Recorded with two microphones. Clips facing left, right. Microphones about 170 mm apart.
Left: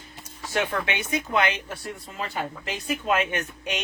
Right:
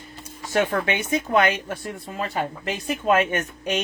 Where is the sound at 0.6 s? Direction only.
45° right (ahead or behind).